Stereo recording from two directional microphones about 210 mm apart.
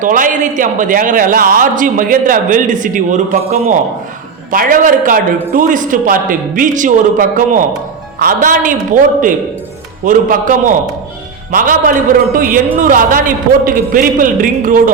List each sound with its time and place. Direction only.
0.0 s a man's voice: 40° right (ahead or behind)